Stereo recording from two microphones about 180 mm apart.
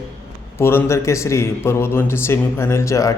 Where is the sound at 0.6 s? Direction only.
15° left (ahead or behind).